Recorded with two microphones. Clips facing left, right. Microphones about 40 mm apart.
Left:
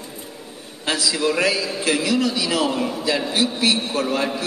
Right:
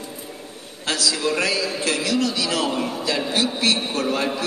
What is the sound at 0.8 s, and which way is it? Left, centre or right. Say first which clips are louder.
A man's voice: left 2 dB; centre.